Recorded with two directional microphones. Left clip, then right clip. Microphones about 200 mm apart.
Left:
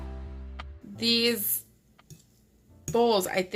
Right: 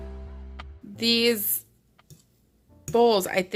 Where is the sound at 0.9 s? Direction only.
40° right (ahead or behind).